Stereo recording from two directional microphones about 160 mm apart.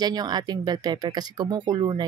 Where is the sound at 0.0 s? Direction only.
25° right (ahead or behind).